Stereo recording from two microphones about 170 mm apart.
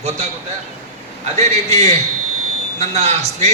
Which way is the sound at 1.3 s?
40° right (ahead or behind).